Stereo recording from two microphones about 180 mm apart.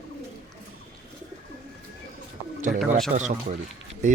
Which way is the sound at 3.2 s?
40° right (ahead or behind).